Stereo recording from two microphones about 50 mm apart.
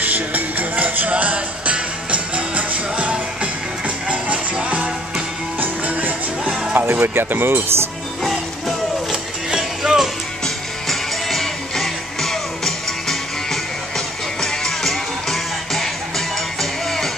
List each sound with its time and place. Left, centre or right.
0.0 s music: right
6.4 s music: centre
6.7 s speech: right
8.2 s music: centre
9.1 s music: centre
10.4 s music: centre